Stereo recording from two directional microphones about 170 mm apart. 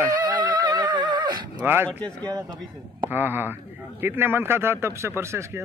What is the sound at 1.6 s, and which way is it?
Speech, 10° right (ahead or behind).